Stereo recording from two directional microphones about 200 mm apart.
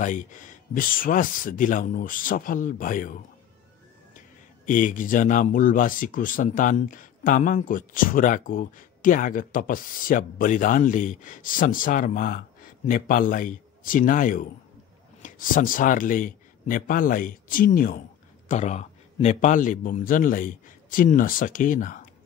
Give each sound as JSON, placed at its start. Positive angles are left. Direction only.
{"t": 0.0, "sound": "speech", "side_deg": 40}
{"t": 4.6, "sound": "speech", "side_deg": 40}
{"t": 18.5, "sound": "a man's voice", "side_deg": 35}